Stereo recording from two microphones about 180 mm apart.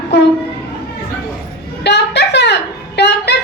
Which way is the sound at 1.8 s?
70° left (ahead or behind).